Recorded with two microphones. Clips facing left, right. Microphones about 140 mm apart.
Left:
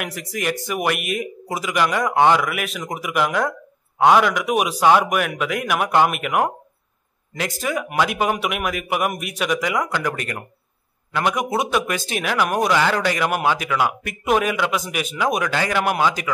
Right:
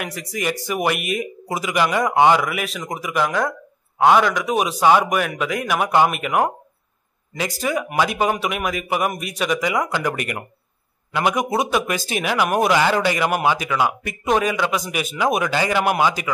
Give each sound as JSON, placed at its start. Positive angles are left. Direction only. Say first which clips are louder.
{"t": 0.0, "sound": "speech", "louder": "even", "side_deg": 0}